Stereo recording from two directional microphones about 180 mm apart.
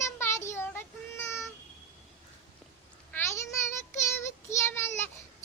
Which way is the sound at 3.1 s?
15° left (ahead or behind).